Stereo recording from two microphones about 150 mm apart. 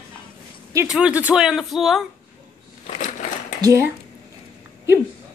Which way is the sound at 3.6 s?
20° right (ahead or behind).